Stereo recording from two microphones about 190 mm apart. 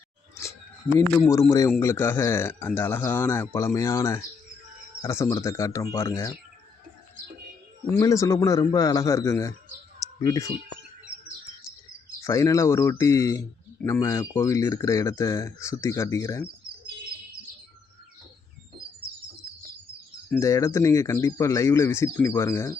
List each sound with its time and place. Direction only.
0.9 s speech: 10° left (ahead or behind)
7.9 s speech: 15° left (ahead or behind)
12.2 s speech: 15° left (ahead or behind)
20.3 s speech: 15° left (ahead or behind)